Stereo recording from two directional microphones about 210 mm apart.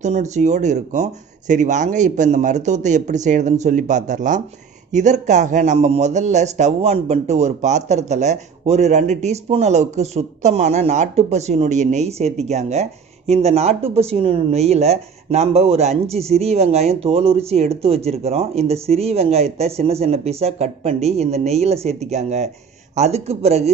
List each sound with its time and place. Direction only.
0.0 s speech: 35° right (ahead or behind)